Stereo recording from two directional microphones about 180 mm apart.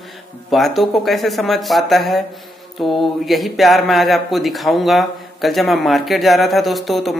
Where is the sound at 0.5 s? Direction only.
Centre (ahead or behind).